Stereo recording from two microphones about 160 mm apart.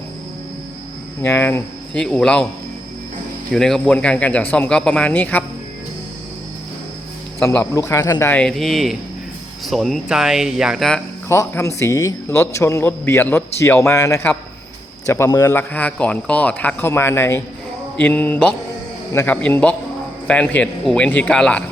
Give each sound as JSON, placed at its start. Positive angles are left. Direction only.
{"t": 1.2, "sound": "a man's voice", "side_deg": 15}
{"t": 3.5, "sound": "a man's voice", "side_deg": 5}
{"t": 7.4, "sound": "a man's voice", "side_deg": 15}
{"t": 11.3, "sound": "a man's voice", "side_deg": 15}